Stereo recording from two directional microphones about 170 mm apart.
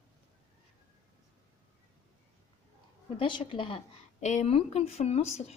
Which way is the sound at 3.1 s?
30° left (ahead or behind).